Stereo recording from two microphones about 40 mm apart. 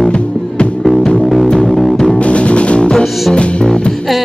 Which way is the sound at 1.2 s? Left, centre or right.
Centre.